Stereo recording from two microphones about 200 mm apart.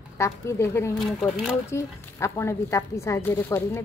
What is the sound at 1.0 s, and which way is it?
Speech, centre (ahead or behind).